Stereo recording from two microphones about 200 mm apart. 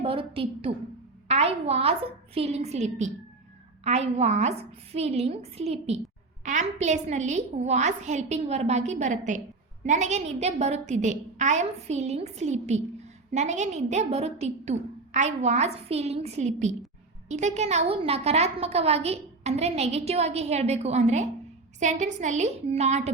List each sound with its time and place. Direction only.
0.0 s a woman's voice: 30° right (ahead or behind)